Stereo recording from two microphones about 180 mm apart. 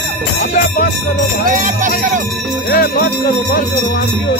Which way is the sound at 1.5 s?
45° right (ahead or behind).